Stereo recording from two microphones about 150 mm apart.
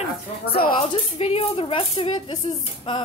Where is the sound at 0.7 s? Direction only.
40° left (ahead or behind).